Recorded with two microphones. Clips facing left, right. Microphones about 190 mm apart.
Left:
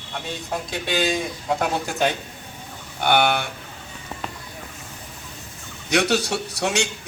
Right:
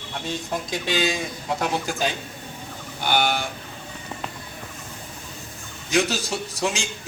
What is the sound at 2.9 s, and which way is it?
Speech, 60° left (ahead or behind).